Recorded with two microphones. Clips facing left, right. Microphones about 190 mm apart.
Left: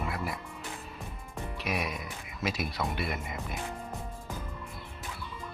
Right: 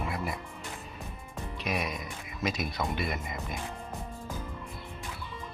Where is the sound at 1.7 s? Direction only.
10° left (ahead or behind).